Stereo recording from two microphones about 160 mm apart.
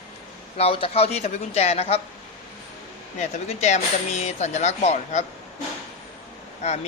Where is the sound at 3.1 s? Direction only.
45° left (ahead or behind).